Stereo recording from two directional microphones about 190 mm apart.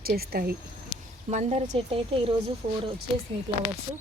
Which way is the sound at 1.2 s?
35° right (ahead or behind).